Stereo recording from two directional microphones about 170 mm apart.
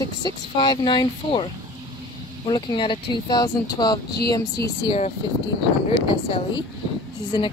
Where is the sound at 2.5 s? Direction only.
30° left (ahead or behind).